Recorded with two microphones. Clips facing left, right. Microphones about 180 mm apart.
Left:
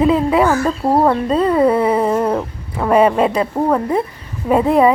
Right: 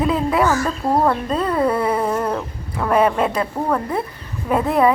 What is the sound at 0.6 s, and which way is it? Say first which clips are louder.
Speech: left 4 dB; 30° left (ahead or behind).